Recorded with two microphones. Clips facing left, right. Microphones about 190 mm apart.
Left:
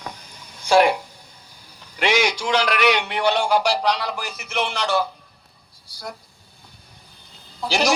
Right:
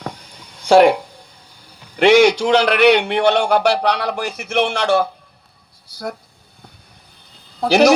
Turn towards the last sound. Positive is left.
turn(degrees=-60)  # may be behind; listen again after turning